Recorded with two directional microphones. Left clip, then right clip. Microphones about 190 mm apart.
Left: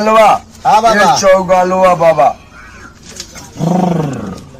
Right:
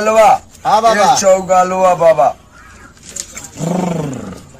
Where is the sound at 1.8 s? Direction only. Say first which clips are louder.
Left 2 dB; 25° right (ahead or behind).